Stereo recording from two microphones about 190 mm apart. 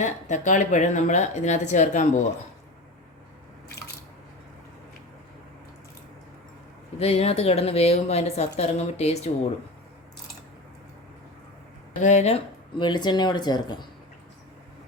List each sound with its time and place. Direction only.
0.0 s speech: 40° left (ahead or behind)
7.0 s speech: 30° left (ahead or behind)
12.0 s speech: 35° left (ahead or behind)